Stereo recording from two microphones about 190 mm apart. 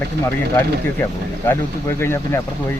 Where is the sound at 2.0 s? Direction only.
15° left (ahead or behind).